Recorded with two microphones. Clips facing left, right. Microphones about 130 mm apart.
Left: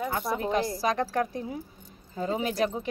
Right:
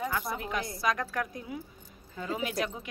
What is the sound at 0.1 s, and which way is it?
A woman's voice, 30° left (ahead or behind).